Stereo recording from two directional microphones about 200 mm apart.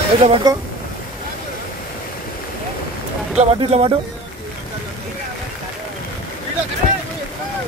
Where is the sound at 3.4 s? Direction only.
30° right (ahead or behind).